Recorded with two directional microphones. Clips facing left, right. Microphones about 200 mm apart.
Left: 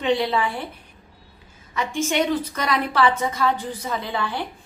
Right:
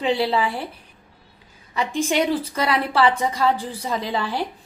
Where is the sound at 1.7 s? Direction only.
35° right (ahead or behind).